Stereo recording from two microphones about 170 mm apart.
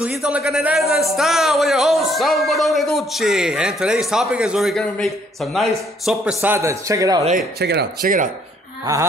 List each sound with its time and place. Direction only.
0.2 s a man's voice: 5° right (ahead or behind); by 7.2 s 20° right (ahead or behind)
7.5 s speech: 70° right (ahead or behind); by 8.3 s 55° right (ahead or behind)